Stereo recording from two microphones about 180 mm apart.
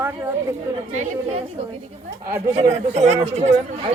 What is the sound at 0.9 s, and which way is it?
Speech, 40° right (ahead or behind).